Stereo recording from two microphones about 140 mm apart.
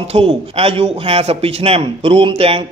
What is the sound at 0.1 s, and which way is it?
A man's voice, 40° right (ahead or behind).